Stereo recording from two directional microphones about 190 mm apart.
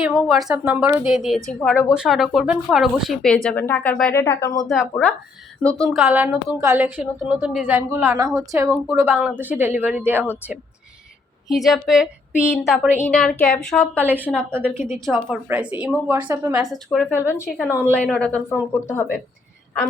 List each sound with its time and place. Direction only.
0.0 s speech: centre (ahead or behind)
4.2 s a woman's voice: 15° left (ahead or behind)
5.0 s a woman's voice: centre (ahead or behind)
11.4 s a woman's voice: centre (ahead or behind)
14.0 s a woman's voice: 10° right (ahead or behind)
15.0 s a woman's voice: centre (ahead or behind)